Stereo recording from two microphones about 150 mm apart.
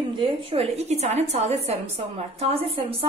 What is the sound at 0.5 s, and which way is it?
A woman's voice, 45° right (ahead or behind).